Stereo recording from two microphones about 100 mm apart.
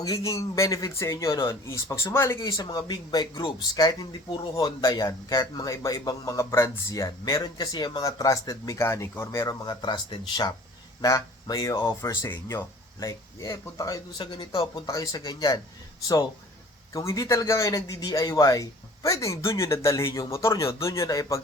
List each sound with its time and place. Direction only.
0.0 s speech: 35° left (ahead or behind)
2.4 s speech: 45° left (ahead or behind)
7.4 s speech: 40° left (ahead or behind)
8.0 s speech: 35° left (ahead or behind)
9.6 s speech: 50° left (ahead or behind)
11.0 s speech: 35° left (ahead or behind)
14.2 s speech: 55° left (ahead or behind)
14.8 s speech: 35° left (ahead or behind)
16.9 s speech: 30° left (ahead or behind)